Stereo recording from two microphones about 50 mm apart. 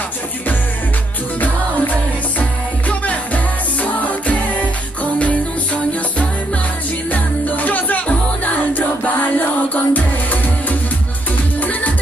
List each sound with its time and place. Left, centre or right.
7.1 s music: left